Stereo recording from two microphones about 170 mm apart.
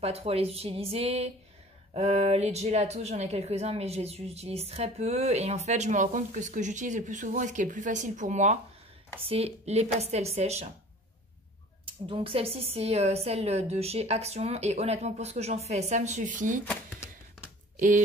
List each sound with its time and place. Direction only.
0.0 s a woman's voice: 35° right (ahead or behind)
11.8 s a woman's voice: 30° right (ahead or behind); by 16.6 s 50° right (ahead or behind)
16.6 s a sound: 10° left (ahead or behind)
17.7 s speech: 50° right (ahead or behind)